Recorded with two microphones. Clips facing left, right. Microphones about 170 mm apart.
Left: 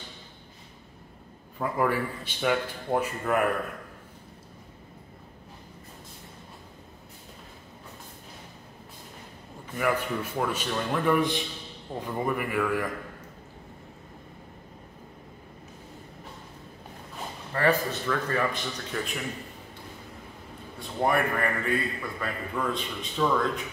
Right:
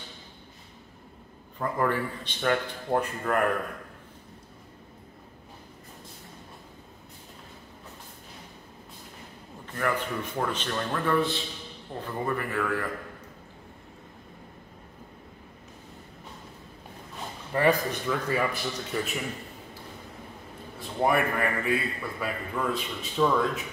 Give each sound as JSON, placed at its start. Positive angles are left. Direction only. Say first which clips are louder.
{"t": 1.6, "sound": "a man's voice", "louder": "left 1 dB", "side_deg": 10}
{"t": 9.8, "sound": "a man's voice", "louder": "left 2 dB", "side_deg": 10}
{"t": 17.6, "sound": "a man's voice", "louder": "right 1 dB", "side_deg": -15}
{"t": 21.0, "sound": "a man's voice", "louder": "right 1 dB", "side_deg": -5}